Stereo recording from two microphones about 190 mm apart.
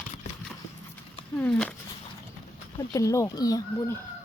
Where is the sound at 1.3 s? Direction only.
5° left (ahead or behind).